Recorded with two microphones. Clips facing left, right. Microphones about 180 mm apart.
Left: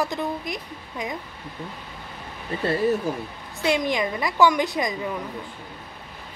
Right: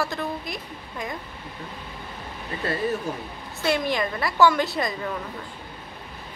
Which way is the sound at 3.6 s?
15° left (ahead or behind).